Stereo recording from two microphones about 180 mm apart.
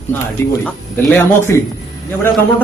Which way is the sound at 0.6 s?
15° left (ahead or behind).